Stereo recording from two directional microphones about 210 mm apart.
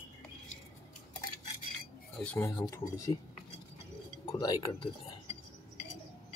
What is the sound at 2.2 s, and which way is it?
Speech, 10° left (ahead or behind).